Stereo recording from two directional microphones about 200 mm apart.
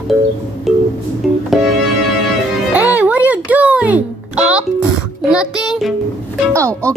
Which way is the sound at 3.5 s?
5° right (ahead or behind).